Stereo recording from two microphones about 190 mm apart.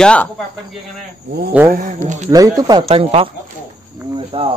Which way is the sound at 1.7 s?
45° right (ahead or behind).